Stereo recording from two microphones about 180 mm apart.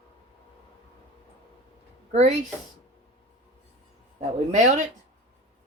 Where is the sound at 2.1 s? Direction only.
40° right (ahead or behind).